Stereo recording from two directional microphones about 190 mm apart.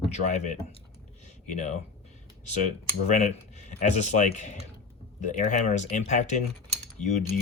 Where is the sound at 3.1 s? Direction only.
40° left (ahead or behind).